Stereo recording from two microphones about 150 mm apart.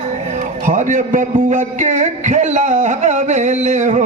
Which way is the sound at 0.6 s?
55° right (ahead or behind).